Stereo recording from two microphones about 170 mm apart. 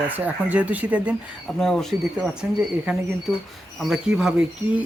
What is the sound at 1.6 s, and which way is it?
Speech, 5° left (ahead or behind).